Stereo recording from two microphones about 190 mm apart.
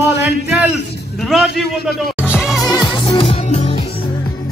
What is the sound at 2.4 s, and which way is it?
Music, 20° left (ahead or behind).